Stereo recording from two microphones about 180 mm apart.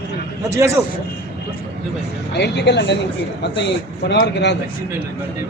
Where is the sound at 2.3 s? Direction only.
70° left (ahead or behind).